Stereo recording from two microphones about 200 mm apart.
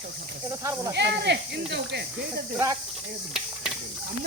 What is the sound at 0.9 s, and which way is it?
Speech, 55° right (ahead or behind).